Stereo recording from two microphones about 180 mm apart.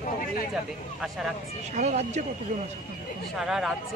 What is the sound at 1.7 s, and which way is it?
Speech, 40° right (ahead or behind).